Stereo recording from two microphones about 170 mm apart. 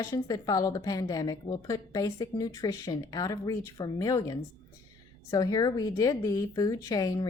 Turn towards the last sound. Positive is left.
turn(degrees=20)  # may be behind; listen again after turning